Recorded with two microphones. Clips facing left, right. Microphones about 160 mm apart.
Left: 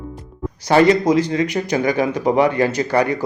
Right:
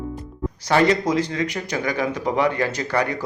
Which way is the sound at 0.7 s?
15° left (ahead or behind).